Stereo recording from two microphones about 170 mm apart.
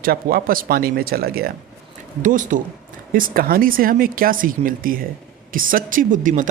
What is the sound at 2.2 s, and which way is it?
A man's voice, 50° right (ahead or behind).